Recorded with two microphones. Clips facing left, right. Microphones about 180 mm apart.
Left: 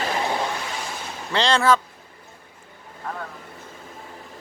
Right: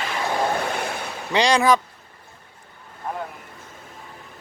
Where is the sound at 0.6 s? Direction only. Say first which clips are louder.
Right 6 dB; 60° right (ahead or behind).